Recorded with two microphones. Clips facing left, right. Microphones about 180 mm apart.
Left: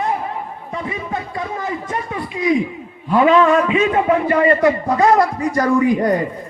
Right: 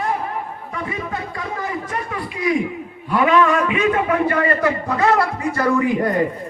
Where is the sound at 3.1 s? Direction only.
25° left (ahead or behind).